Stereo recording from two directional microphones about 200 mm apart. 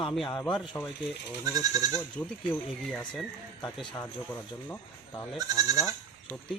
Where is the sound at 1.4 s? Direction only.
15° right (ahead or behind).